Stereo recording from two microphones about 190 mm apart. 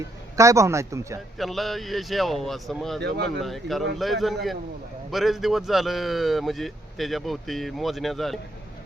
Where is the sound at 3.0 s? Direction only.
60° right (ahead or behind).